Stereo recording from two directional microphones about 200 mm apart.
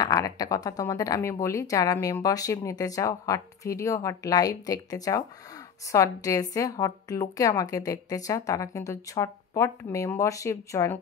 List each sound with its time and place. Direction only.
0.0 s speech: 15° left (ahead or behind)